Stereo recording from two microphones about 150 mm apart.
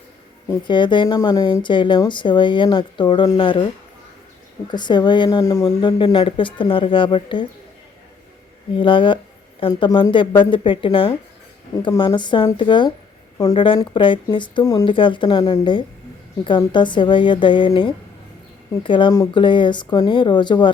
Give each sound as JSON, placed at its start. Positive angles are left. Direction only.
{"t": 0.6, "sound": "speech", "side_deg": 30}
{"t": 4.7, "sound": "speech", "side_deg": 30}
{"t": 6.0, "sound": "speech", "side_deg": 35}
{"t": 8.7, "sound": "speech", "side_deg": 35}
{"t": 18.8, "sound": "speech", "side_deg": 35}